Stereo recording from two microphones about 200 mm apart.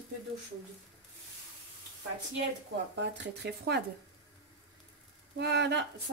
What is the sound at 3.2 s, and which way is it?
Speech, 55° right (ahead or behind).